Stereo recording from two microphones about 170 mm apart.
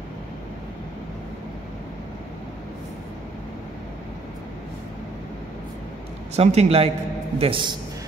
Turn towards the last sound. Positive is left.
turn(degrees=-30)  # may be behind; listen again after turning